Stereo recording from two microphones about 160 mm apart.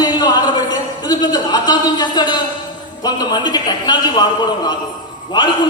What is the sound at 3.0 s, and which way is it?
A man's voice, 25° left (ahead or behind).